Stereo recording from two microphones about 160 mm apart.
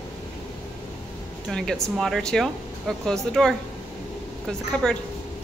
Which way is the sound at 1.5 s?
5° left (ahead or behind).